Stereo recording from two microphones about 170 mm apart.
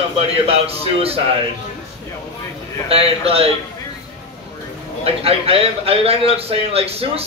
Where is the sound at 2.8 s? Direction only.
35° right (ahead or behind).